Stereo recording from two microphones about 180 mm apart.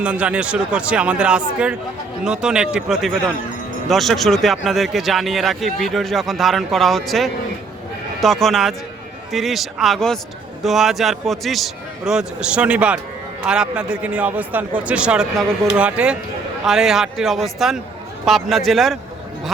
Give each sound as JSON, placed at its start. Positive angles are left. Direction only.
{"t": 0.0, "sound": "a man's voice", "side_deg": -5}